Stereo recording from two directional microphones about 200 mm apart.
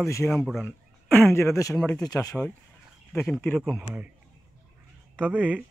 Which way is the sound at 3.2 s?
5° left (ahead or behind).